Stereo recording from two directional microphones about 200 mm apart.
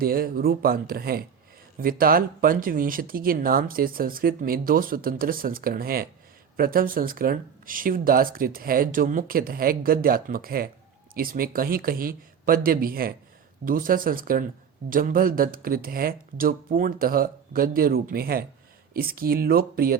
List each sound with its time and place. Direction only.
0.0 s speech: 45° right (ahead or behind)